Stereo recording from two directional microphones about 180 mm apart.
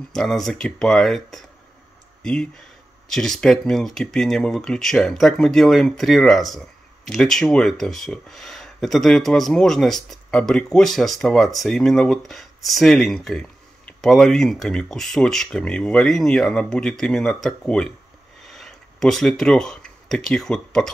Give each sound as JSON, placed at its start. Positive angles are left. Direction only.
{"t": 0.1, "sound": "speech", "side_deg": 0}